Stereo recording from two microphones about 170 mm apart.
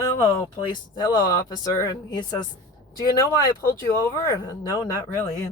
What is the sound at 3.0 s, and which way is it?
Speech, 25° left (ahead or behind).